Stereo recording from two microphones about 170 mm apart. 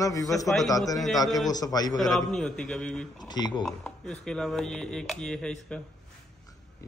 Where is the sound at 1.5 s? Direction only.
20° left (ahead or behind).